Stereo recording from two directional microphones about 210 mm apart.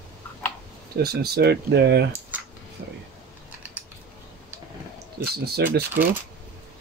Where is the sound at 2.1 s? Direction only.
10° right (ahead or behind).